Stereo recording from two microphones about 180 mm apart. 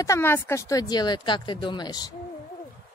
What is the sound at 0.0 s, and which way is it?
Speech, 15° left (ahead or behind).